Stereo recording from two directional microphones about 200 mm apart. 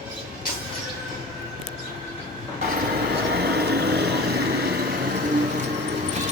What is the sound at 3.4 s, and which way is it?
Vehicle, 55° right (ahead or behind).